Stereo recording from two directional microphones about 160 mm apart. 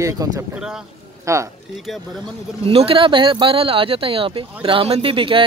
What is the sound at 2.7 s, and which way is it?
Speech, 35° right (ahead or behind).